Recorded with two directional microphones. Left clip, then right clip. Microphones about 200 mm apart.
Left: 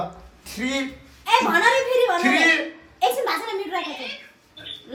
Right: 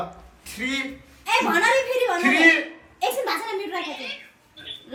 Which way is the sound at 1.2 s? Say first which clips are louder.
Left 3 dB; centre (ahead or behind).